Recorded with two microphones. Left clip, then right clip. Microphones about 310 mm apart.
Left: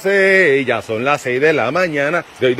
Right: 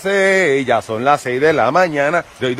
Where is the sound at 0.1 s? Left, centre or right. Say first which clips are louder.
Left 2 dB; centre.